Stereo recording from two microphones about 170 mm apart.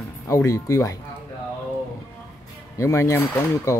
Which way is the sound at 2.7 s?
15° left (ahead or behind).